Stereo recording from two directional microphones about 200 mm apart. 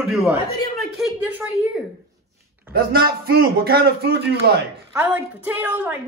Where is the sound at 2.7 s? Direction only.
50° right (ahead or behind).